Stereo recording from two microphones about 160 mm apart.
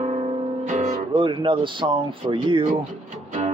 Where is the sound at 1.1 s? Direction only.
30° right (ahead or behind).